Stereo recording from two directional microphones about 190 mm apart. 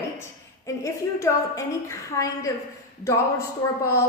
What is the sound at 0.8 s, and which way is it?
A woman's voice, 15° left (ahead or behind).